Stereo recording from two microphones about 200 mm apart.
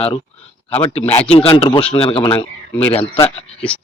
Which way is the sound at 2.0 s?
25° left (ahead or behind).